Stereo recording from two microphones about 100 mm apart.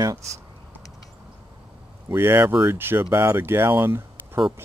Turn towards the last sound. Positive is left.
turn(degrees=-25)  # may be behind; listen again after turning